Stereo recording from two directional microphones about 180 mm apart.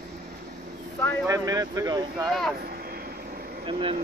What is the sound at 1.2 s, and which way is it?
Speech, 20° right (ahead or behind).